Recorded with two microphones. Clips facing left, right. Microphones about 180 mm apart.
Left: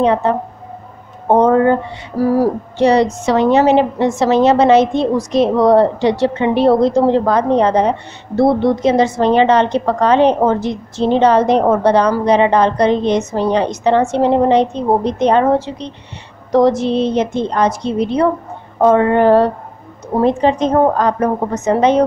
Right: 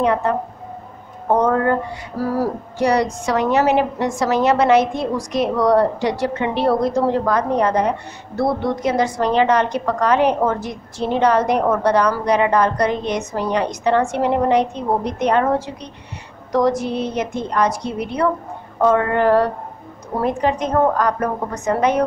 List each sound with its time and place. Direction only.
0.0 s a woman's voice: 25° left (ahead or behind)